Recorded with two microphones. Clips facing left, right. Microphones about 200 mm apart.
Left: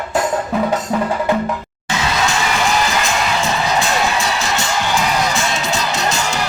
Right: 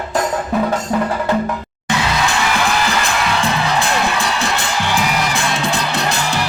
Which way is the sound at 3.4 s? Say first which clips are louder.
Even; 55° right (ahead or behind).